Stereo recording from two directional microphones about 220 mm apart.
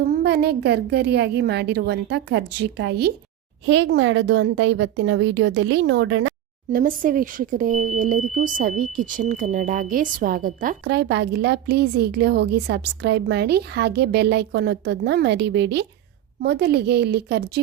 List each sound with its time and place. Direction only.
0.1 s a woman's voice: 45° right (ahead or behind)
6.7 s speech: 40° right (ahead or behind)